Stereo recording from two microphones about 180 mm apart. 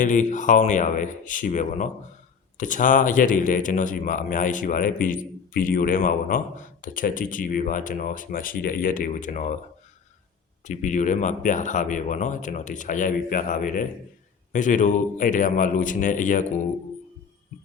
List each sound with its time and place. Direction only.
0.0 s speech: 45° left (ahead or behind)
10.7 s speech: 45° left (ahead or behind)